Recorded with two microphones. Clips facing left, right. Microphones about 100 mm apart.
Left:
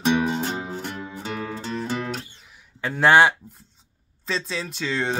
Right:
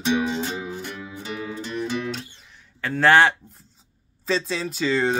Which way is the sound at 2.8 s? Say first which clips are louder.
Even; 15° left (ahead or behind).